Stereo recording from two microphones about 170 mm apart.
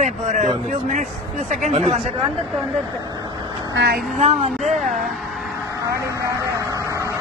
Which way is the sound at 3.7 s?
75° right (ahead or behind).